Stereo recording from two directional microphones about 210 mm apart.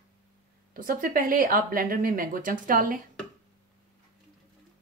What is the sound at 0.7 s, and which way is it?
Speech, 40° right (ahead or behind).